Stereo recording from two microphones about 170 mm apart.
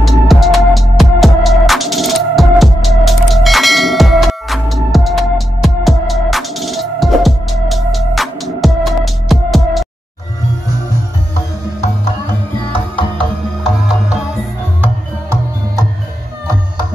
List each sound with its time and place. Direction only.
0.0 s music: centre (ahead or behind)